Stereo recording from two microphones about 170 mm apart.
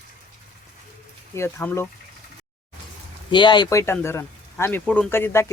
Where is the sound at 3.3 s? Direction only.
25° left (ahead or behind).